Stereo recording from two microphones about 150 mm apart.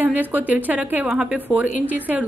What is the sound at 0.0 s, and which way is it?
A woman's voice, 10° right (ahead or behind).